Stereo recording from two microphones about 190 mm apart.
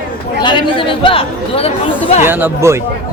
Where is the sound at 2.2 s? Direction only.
10° right (ahead or behind).